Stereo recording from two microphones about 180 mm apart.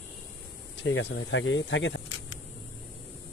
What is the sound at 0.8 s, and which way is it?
Speech, 90° left.